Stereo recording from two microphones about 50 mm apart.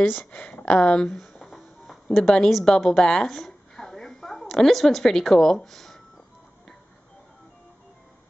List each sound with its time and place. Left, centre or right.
0.0 s speech: left
1.1 s music: centre
2.1 s a woman's voice: centre
3.3 s a sound: centre